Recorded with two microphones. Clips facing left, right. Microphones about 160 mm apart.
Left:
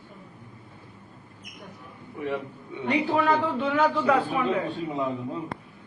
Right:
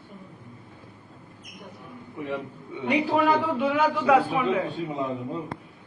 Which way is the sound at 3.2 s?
10° right (ahead or behind).